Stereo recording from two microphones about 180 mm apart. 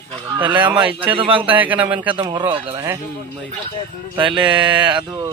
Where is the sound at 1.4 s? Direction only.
10° right (ahead or behind).